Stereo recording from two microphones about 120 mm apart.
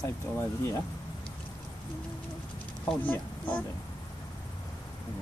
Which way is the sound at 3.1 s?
10° left (ahead or behind).